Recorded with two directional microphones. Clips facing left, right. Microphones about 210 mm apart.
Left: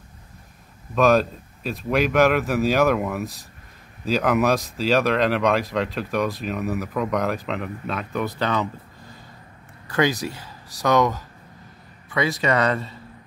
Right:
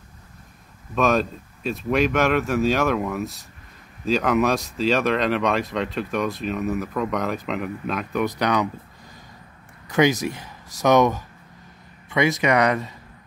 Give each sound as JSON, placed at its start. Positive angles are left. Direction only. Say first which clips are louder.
{"t": 0.9, "sound": "speech", "louder": "left 3 dB", "side_deg": 0}
{"t": 9.9, "sound": "speech", "louder": "right 3 dB", "side_deg": -20}